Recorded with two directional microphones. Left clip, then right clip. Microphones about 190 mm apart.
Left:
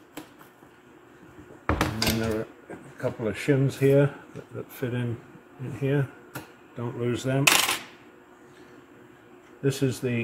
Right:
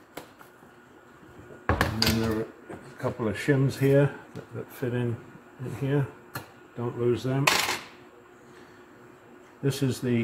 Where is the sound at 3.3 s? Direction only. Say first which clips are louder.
Left 1 dB; centre (ahead or behind).